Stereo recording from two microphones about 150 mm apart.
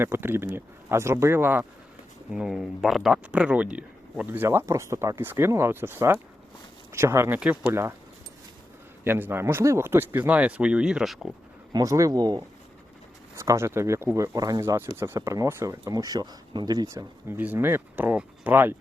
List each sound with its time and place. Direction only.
0.0 s speech: 15° right (ahead or behind)
2.3 s speech: 5° right (ahead or behind)
9.0 s speech: 15° right (ahead or behind)
11.7 s speech: 25° right (ahead or behind)